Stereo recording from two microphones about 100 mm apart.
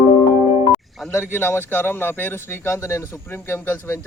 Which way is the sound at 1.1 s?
25° left (ahead or behind).